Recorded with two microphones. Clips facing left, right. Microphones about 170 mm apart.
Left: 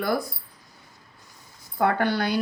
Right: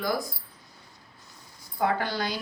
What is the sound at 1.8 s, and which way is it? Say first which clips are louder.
Speech: left 4 dB; 60° left (ahead or behind).